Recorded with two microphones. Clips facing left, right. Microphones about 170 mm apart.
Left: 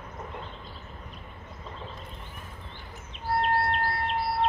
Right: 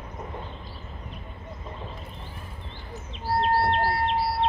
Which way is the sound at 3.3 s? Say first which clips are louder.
Right 3 dB; 30° right (ahead or behind).